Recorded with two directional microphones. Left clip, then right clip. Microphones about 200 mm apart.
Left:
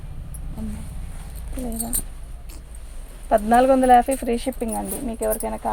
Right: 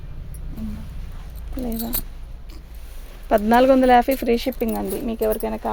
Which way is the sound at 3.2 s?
50° right (ahead or behind).